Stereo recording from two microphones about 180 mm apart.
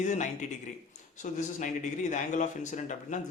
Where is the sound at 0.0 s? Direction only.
40° left (ahead or behind).